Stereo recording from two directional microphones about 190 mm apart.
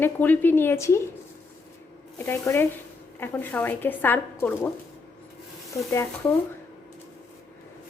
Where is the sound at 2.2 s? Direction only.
15° left (ahead or behind).